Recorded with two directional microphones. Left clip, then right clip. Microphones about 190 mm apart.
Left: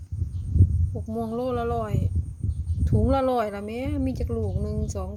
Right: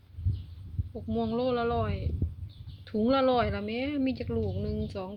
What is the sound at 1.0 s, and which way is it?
Speech, 10° left (ahead or behind).